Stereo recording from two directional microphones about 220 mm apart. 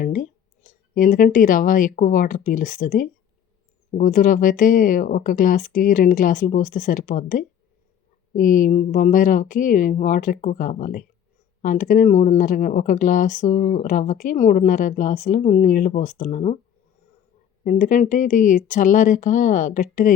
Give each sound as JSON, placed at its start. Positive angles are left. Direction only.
{"t": 0.0, "sound": "speech", "side_deg": 35}
{"t": 17.6, "sound": "speech", "side_deg": 35}